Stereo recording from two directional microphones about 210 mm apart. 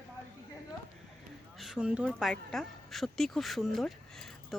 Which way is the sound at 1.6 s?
5° right (ahead or behind).